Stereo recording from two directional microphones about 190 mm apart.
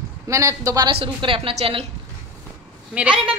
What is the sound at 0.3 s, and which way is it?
A woman's voice, 15° right (ahead or behind).